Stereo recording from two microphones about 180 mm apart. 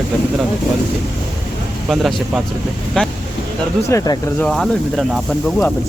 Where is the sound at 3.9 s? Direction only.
15° left (ahead or behind).